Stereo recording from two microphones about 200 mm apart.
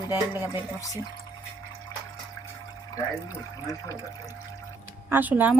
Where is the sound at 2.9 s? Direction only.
20° left (ahead or behind).